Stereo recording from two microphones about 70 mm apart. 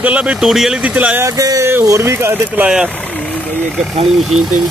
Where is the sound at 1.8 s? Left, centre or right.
Right.